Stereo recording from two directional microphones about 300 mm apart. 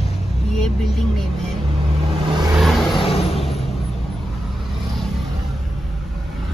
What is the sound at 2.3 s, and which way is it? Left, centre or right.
Vehicle, centre.